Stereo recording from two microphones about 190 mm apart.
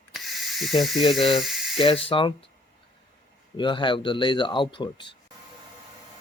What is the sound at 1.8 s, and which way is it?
Speech, 30° left (ahead or behind).